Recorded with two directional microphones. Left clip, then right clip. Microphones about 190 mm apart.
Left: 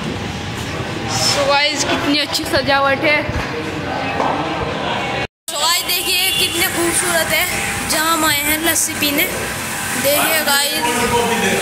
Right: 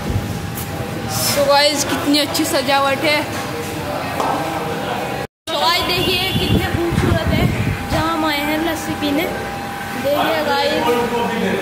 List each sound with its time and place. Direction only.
1.5 s a woman's voice: 25° right (ahead or behind)
2.3 s a woman's voice: 15° right (ahead or behind)
5.6 s a sound: centre (ahead or behind)
8.3 s a woman's voice: 5° right (ahead or behind)
10.3 s a woman's voice: 5° right (ahead or behind)